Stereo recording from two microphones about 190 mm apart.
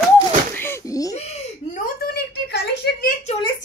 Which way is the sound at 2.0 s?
60° left (ahead or behind).